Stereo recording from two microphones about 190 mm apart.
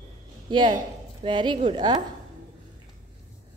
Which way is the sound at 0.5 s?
25° right (ahead or behind).